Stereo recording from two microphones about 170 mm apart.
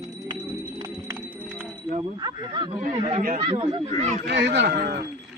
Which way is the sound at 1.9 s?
30° right (ahead or behind).